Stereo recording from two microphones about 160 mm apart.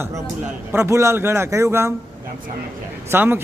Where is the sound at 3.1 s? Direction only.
15° right (ahead or behind).